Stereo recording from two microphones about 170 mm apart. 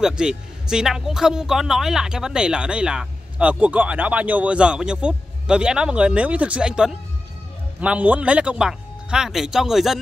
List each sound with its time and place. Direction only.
0.0 s a man's voice: 5° right (ahead or behind)